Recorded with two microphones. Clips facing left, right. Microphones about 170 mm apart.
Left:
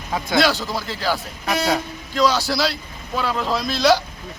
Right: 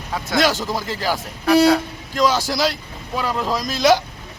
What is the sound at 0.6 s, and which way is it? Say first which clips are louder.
Speech: right 2 dB; 15° right (ahead or behind).